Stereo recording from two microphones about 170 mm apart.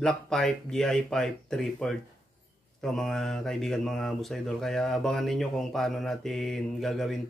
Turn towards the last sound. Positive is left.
turn(degrees=0)  # may be behind; listen again after turning